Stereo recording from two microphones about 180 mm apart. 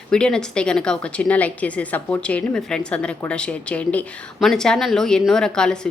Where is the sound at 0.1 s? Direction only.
5° left (ahead or behind).